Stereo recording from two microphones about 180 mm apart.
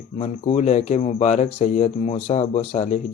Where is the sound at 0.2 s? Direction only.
35° left (ahead or behind).